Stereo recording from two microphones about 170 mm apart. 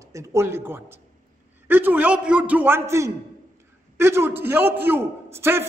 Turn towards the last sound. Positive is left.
turn(degrees=-15)  # may be behind; listen again after turning